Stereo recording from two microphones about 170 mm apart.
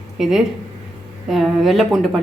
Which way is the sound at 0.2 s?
Centre (ahead or behind).